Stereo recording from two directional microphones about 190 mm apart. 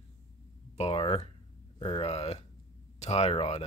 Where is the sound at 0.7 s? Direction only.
30° left (ahead or behind).